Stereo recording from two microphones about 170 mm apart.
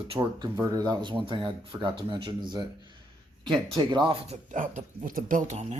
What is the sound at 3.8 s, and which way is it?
Speech, 25° right (ahead or behind).